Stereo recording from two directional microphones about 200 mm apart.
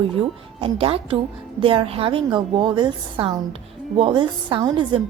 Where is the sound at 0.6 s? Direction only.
30° right (ahead or behind).